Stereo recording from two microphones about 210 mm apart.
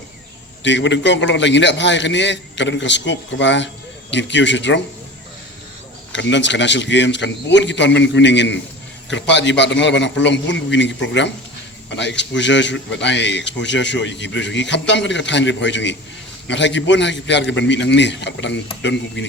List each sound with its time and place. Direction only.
0.6 s a man's voice: 60° left (ahead or behind)
6.1 s a man's voice: 60° left (ahead or behind)